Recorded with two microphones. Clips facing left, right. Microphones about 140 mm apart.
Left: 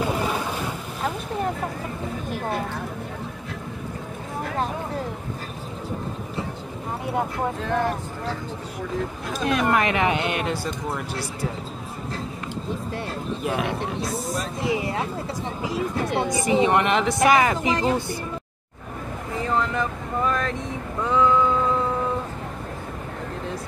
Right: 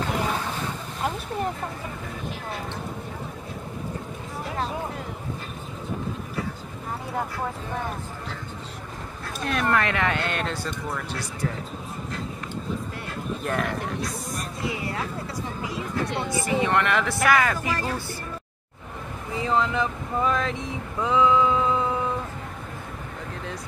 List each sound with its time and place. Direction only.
0.0 s boat: 15° left (ahead or behind)
7.6 s speech: 85° left
9.5 s speech: 15° left (ahead or behind)
13.4 s speech: 5° left (ahead or behind)
13.7 s speech: 25° left (ahead or behind)
19.4 s speech: centre (ahead or behind)
21.0 s a sound: 5° right (ahead or behind)